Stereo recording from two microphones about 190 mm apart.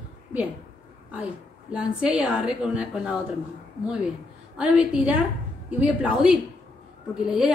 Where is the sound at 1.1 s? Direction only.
5° right (ahead or behind).